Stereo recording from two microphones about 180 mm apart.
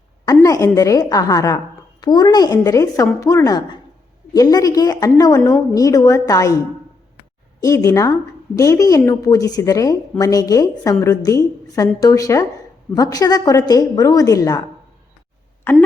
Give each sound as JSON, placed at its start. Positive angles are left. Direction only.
{"t": 0.3, "sound": "a woman's voice", "side_deg": 20}
{"t": 7.6, "sound": "a woman's voice", "side_deg": 20}